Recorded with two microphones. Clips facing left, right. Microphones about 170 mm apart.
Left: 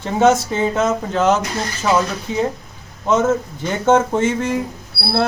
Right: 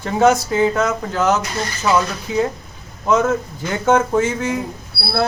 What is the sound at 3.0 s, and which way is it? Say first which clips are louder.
Speech: even; 25° left (ahead or behind).